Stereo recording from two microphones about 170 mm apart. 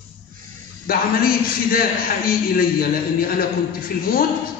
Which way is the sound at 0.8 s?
60° left (ahead or behind).